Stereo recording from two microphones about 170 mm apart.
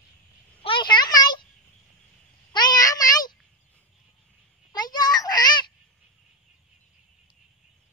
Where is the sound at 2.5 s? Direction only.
25° left (ahead or behind).